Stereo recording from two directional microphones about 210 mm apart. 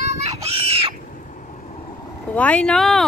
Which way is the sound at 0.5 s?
25° right (ahead or behind).